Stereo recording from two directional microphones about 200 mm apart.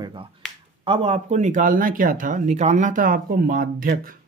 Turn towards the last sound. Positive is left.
turn(degrees=-45)  # may be behind; listen again after turning